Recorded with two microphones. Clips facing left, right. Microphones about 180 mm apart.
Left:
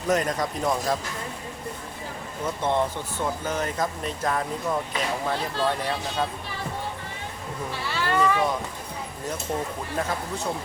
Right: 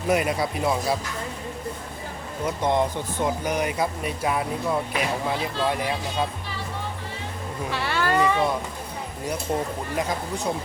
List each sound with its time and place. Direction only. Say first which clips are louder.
0.1 s speech: right 1 dB; 10° right (ahead or behind)
2.6 s speech: right 2 dB; 15° right (ahead or behind)
7.7 s speech: right 6 dB; 70° right (ahead or behind)
8.1 s a sound: even; 10° right (ahead or behind)
10.0 s speech: right 1 dB; 15° right (ahead or behind)